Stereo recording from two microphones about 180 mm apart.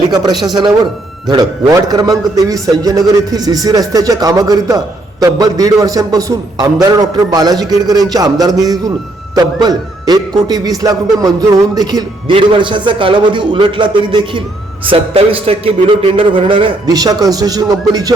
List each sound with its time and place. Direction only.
0.1 s a man's voice: 25° right (ahead or behind)